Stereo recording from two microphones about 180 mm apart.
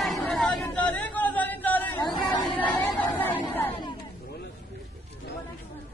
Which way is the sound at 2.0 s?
25° left (ahead or behind).